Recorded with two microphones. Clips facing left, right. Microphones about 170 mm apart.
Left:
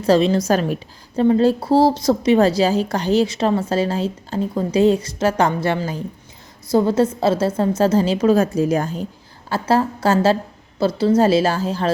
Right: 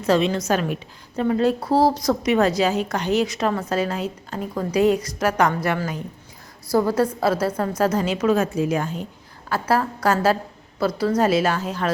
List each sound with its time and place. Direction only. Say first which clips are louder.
0.0 s a woman's voice: left 4 dB; 35° left (ahead or behind)
9.5 s a woman's voice: left 3 dB; 25° left (ahead or behind)